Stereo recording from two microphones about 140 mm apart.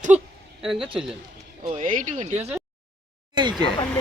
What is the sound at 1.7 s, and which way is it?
Speech, 60° right (ahead or behind).